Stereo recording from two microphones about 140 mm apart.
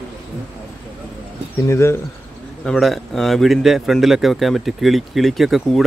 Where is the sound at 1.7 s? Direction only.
20° left (ahead or behind).